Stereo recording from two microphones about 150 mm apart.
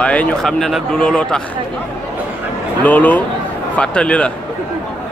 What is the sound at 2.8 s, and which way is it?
Speech, 10° left (ahead or behind).